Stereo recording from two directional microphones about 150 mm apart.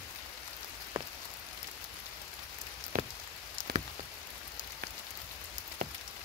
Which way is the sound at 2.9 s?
65° right (ahead or behind).